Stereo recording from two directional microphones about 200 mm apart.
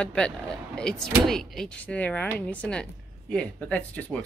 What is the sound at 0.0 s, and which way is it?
A woman's voice, 5° left (ahead or behind).